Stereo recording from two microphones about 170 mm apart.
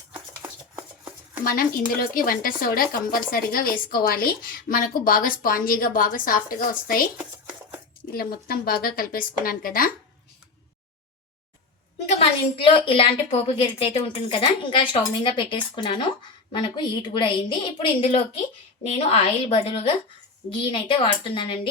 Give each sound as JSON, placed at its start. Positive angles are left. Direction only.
{"t": 0.1, "sound": "a sound", "side_deg": -10}
{"t": 2.0, "sound": "speech", "side_deg": 55}
{"t": 8.1, "sound": "speech", "side_deg": 60}
{"t": 12.2, "sound": "a woman's voice", "side_deg": 30}